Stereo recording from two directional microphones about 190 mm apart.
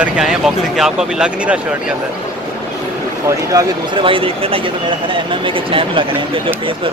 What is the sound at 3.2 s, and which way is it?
Speech, 20° right (ahead or behind).